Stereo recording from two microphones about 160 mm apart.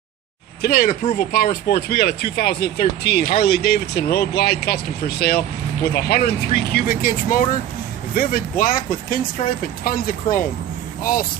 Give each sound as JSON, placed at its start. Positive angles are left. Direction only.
{"t": 0.6, "sound": "speech", "side_deg": 70}